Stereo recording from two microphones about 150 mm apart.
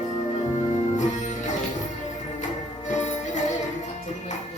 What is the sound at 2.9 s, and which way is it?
Music, 50° left (ahead or behind).